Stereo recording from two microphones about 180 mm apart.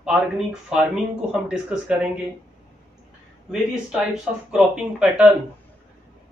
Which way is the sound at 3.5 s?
5° right (ahead or behind).